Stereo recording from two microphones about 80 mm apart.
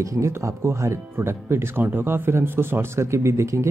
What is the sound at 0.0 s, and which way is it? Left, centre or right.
Speech, right.